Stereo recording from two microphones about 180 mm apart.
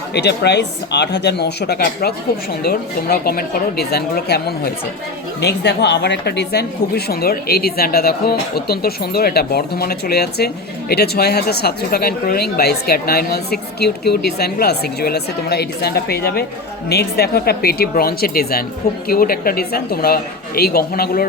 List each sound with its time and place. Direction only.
0.1 s speech: 70° left (ahead or behind)